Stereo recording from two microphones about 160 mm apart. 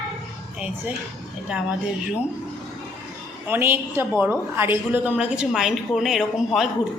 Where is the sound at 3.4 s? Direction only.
15° right (ahead or behind).